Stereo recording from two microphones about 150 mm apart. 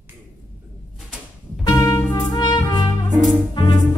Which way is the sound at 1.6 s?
25° left (ahead or behind).